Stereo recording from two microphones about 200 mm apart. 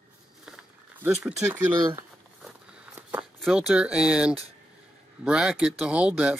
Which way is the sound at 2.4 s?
5° right (ahead or behind).